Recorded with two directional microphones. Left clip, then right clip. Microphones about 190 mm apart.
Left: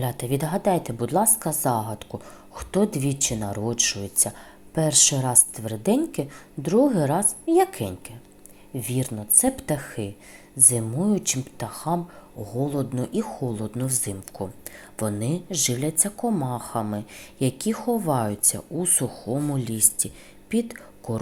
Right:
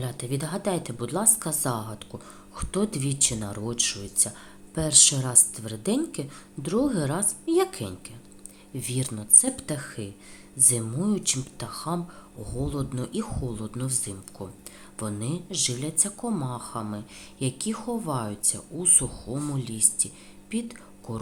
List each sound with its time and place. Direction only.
0.0 s a woman's voice: 20° left (ahead or behind)